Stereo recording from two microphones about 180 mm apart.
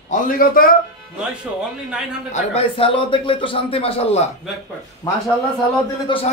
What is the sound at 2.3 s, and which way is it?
Speech, 35° left (ahead or behind).